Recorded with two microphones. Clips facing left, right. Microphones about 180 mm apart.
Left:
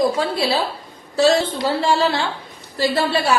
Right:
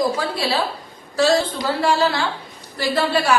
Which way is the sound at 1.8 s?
25° left (ahead or behind).